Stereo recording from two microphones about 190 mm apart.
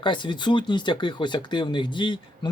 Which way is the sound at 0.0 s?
25° left (ahead or behind).